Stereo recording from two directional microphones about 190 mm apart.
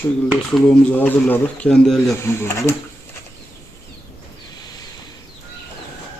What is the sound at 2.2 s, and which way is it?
Speech, 15° left (ahead or behind).